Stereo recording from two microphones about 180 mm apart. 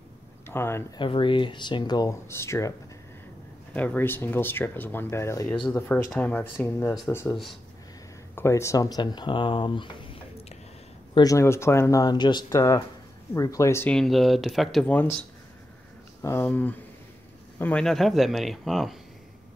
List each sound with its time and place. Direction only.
0.5 s speech: 15° left (ahead or behind)
0.9 s speech: 30° left (ahead or behind)
3.7 s speech: 10° left (ahead or behind)
8.4 s speech: 15° left (ahead or behind)
11.1 s speech: 20° left (ahead or behind)
13.9 s speech: centre (ahead or behind)
16.2 s speech: 15° left (ahead or behind)